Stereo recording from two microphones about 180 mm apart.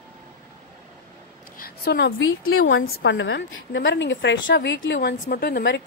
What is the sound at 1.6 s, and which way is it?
A woman's voice, 60° left (ahead or behind).